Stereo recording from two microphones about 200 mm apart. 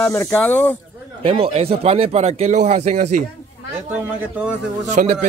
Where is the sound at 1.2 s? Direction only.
30° right (ahead or behind).